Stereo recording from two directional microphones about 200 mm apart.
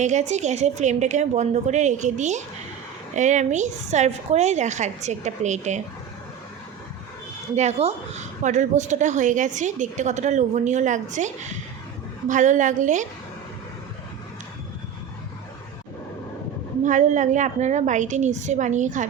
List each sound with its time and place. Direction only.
0.0 s a woman's voice: 35° right (ahead or behind)
7.5 s a woman's voice: 35° right (ahead or behind)
16.8 s a woman's voice: 40° right (ahead or behind)